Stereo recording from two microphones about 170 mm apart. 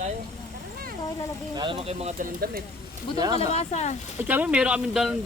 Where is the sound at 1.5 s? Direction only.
25° right (ahead or behind).